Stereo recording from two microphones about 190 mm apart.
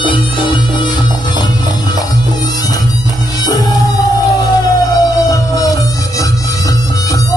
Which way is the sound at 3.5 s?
20° left (ahead or behind).